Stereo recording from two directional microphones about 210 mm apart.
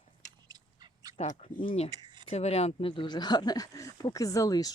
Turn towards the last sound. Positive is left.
turn(degrees=15)  # may be behind; listen again after turning